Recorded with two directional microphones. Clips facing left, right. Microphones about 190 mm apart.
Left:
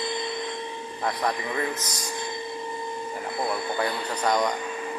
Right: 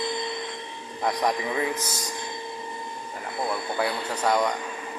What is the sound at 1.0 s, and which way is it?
Speech, 10° right (ahead or behind).